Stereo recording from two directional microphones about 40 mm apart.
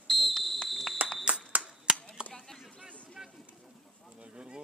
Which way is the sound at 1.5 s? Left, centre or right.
Right.